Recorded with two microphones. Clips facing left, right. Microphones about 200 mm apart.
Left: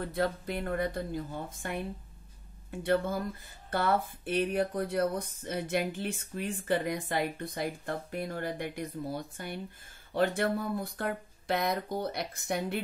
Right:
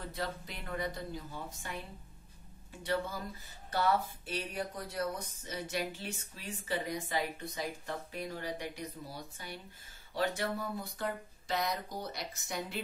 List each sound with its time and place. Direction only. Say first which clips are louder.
0.0 s speech: left 8 dB; 55° left (ahead or behind)